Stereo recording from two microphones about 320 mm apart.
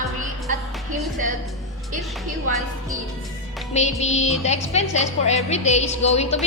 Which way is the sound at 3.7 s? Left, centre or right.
Left.